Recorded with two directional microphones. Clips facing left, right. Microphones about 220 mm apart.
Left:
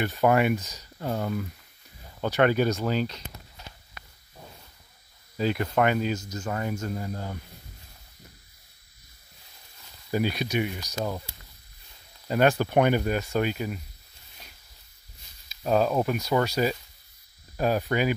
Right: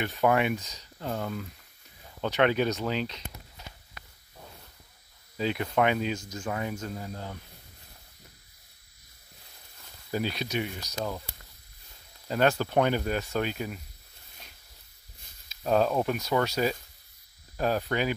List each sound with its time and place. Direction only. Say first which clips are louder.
0.0 s speech: left 3 dB; 5° left (ahead or behind)
5.4 s speech: left 2 dB; centre (ahead or behind)
10.1 s speech: left 4 dB; 10° left (ahead or behind)
12.3 s speech: left 3 dB; 15° left (ahead or behind)
15.6 s speech: left 1 dB; 5° left (ahead or behind)